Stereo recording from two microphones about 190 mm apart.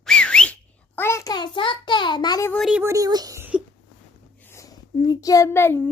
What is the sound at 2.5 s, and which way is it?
Speech, centre (ahead or behind).